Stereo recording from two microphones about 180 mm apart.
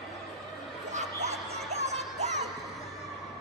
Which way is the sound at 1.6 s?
40° right (ahead or behind).